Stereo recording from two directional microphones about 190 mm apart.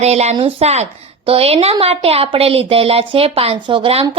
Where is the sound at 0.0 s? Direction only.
35° right (ahead or behind).